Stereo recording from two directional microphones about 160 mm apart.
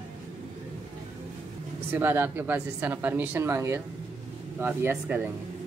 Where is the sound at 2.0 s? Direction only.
15° right (ahead or behind).